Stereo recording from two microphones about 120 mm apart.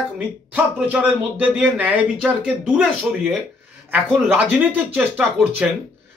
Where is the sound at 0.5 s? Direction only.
10° right (ahead or behind).